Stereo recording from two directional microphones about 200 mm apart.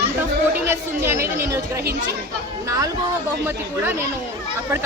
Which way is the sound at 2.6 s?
15° right (ahead or behind).